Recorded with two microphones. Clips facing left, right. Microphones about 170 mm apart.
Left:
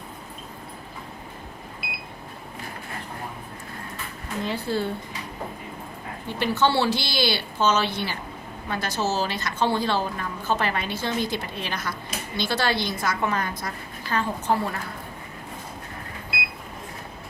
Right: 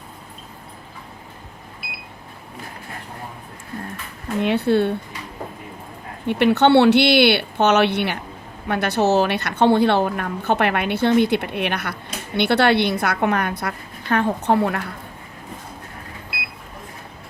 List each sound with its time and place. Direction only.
4.4 s a woman's voice: 65° right (ahead or behind)
6.2 s a woman's voice: 65° right (ahead or behind)